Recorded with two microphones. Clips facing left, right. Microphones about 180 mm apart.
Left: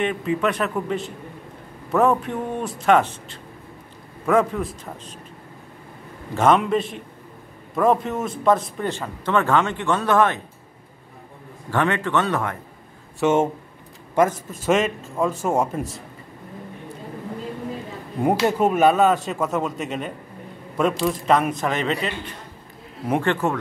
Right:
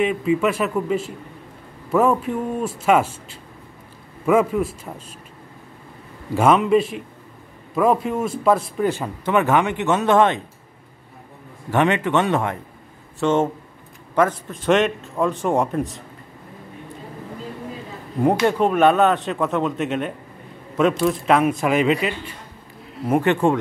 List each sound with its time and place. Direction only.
0.0 s a man's voice: 5° right (ahead or behind)
6.3 s a man's voice: 5° right (ahead or behind); by 10.4 s 25° right (ahead or behind)
11.7 s speech: 20° right (ahead or behind)
13.2 s speech: 10° left (ahead or behind)
14.5 s speech: 5° left (ahead or behind)
18.2 s a man's voice: 5° left (ahead or behind)
23.2 s speech: 20° right (ahead or behind)